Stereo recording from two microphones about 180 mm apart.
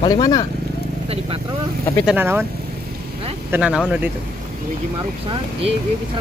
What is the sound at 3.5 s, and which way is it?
Speech, 5° right (ahead or behind).